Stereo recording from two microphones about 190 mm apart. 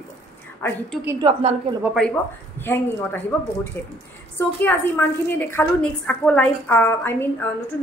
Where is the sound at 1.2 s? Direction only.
25° right (ahead or behind).